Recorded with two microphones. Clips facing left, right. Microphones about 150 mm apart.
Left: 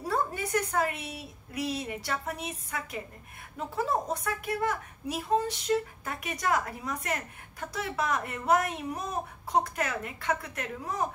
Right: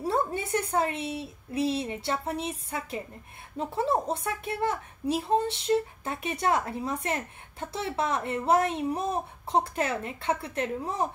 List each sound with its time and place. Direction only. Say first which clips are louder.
0.0 s a woman's voice: right 3 dB; 25° right (ahead or behind)